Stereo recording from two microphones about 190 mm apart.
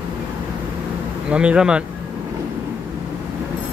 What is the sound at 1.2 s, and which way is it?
Speech, 5° right (ahead or behind).